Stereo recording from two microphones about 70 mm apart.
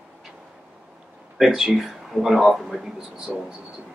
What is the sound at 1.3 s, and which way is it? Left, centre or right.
Speech, centre.